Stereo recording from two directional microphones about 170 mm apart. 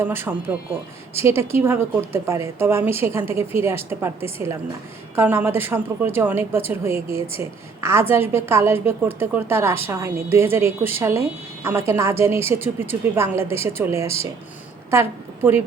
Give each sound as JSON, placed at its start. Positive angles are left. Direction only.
{"t": 0.0, "sound": "a woman's voice", "side_deg": -15}
{"t": 7.1, "sound": "a woman's voice", "side_deg": 35}
{"t": 7.8, "sound": "a woman's voice", "side_deg": -15}